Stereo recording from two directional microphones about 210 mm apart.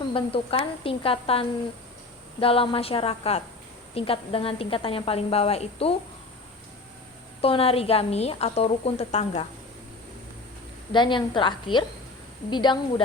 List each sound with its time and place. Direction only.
0.1 s a woman's voice: 25° left (ahead or behind)
7.4 s a woman's voice: 25° left (ahead or behind)
10.9 s a woman's voice: 20° left (ahead or behind)